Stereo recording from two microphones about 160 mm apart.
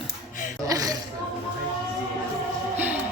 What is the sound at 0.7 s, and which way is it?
Speech, 20° right (ahead or behind).